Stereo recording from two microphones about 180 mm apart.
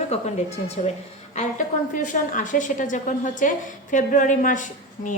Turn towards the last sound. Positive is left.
turn(degrees=45)  # may be behind; listen again after turning